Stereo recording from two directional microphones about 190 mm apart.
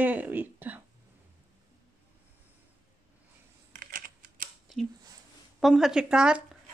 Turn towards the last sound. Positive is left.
turn(degrees=-5)  # may be behind; listen again after turning